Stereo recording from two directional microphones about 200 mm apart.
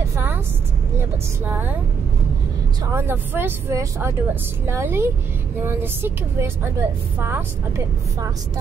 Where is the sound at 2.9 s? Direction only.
10° right (ahead or behind).